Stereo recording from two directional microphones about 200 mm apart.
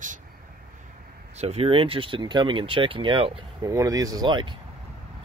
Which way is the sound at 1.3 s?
30° right (ahead or behind).